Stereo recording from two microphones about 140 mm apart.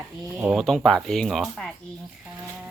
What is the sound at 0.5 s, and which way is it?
Speech, centre (ahead or behind).